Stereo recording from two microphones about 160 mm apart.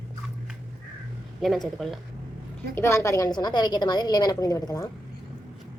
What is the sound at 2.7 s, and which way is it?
A woman's voice, 15° left (ahead or behind).